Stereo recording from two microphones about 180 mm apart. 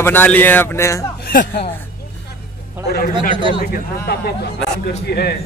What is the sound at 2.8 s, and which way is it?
Speech, 55° left (ahead or behind).